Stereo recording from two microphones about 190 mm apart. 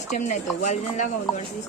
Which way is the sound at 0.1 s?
40° left (ahead or behind).